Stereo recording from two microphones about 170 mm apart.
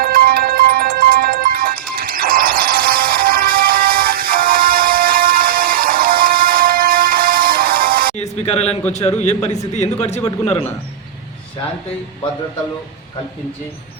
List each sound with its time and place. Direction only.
0.0 s music: 60° right (ahead or behind)
8.1 s music: 40° left (ahead or behind)
9.2 s a man's voice: 40° left (ahead or behind)